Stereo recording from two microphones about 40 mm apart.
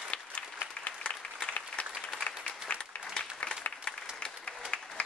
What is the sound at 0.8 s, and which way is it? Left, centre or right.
Applause, left.